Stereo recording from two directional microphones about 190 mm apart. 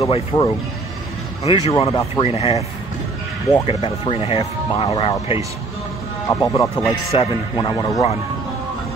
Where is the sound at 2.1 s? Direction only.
30° left (ahead or behind).